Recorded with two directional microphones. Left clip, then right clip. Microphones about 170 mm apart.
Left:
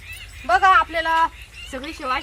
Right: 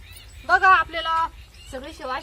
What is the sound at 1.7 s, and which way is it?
Speech, 25° right (ahead or behind).